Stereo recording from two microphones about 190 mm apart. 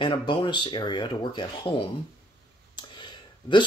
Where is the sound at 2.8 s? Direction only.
25° left (ahead or behind).